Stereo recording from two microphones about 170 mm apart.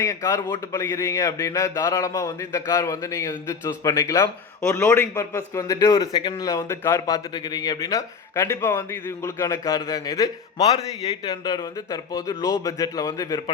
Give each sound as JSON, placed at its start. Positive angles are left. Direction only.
{"t": 0.0, "sound": "a man's voice", "side_deg": 20}